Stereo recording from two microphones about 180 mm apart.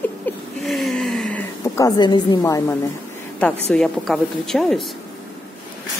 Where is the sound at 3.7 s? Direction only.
5° left (ahead or behind).